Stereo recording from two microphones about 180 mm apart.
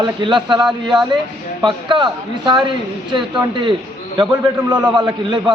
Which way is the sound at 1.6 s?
25° right (ahead or behind).